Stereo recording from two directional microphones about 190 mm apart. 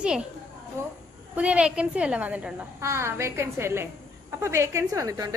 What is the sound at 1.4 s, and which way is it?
A woman's voice, 5° right (ahead or behind).